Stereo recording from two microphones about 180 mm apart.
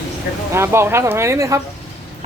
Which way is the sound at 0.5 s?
15° right (ahead or behind).